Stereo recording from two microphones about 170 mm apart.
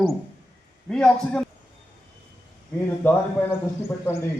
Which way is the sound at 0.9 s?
5° left (ahead or behind).